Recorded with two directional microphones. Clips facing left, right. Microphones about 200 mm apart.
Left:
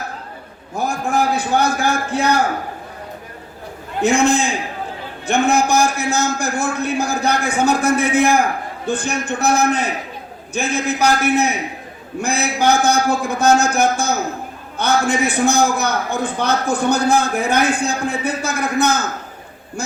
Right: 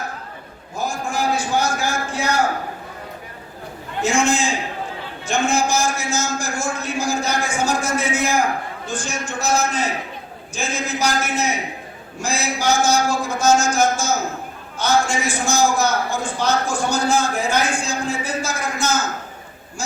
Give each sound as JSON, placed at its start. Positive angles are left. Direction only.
{"t": 0.8, "sound": "a man's voice", "side_deg": 60}
{"t": 4.0, "sound": "a man's voice", "side_deg": 60}